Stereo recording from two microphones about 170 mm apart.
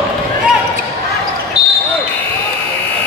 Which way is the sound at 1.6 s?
25° left (ahead or behind).